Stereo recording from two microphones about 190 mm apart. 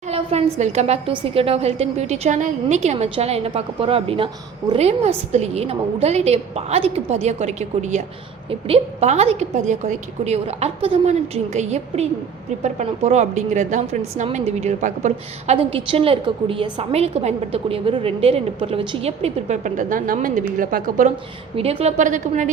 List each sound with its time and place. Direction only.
0.1 s a woman's voice: 35° right (ahead or behind)
15.5 s a woman's voice: 30° right (ahead or behind); by 21.1 s 45° right (ahead or behind)
21.5 s a woman's voice: 30° right (ahead or behind)